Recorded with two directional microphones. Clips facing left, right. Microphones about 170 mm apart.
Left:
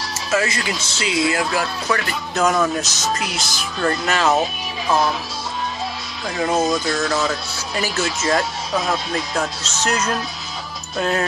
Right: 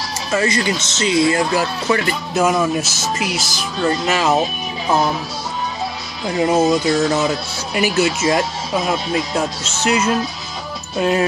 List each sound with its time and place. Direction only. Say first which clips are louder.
0.3 s speech: right 3 dB; 5° left (ahead or behind)
1.9 s music: right 4 dB; 25° right (ahead or behind)
2.3 s speech: right 2 dB; 10° right (ahead or behind)
6.2 s speech: right 4 dB; 20° right (ahead or behind)